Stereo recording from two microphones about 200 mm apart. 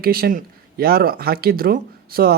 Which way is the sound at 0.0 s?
50° right (ahead or behind).